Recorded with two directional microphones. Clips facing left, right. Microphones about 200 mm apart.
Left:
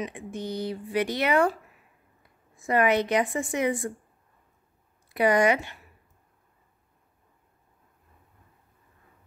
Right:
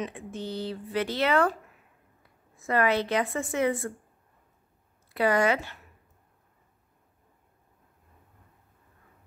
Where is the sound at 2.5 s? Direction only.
15° left (ahead or behind).